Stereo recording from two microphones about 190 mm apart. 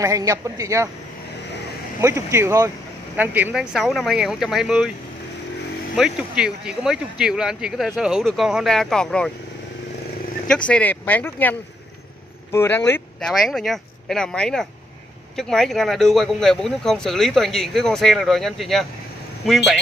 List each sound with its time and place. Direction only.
0.0 s speech: 15° right (ahead or behind)
2.0 s speech: 15° right (ahead or behind)
5.9 s speech: 5° right (ahead or behind)
10.5 s speech: 5° left (ahead or behind)
12.5 s speech: 10° left (ahead or behind)
13.3 s speech: centre (ahead or behind)